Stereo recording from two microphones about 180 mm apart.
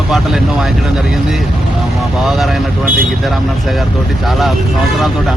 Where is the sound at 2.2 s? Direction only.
Centre (ahead or behind).